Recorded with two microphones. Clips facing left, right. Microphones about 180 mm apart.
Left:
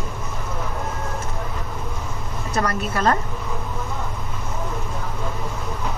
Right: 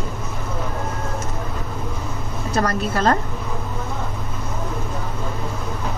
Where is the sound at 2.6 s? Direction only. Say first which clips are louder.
Right 2 dB; 35° right (ahead or behind).